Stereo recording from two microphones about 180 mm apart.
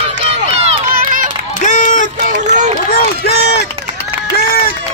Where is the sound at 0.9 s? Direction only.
50° right (ahead or behind).